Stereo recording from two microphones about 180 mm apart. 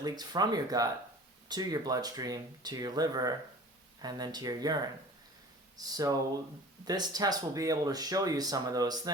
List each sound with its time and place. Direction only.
0.0 s speech: 20° right (ahead or behind)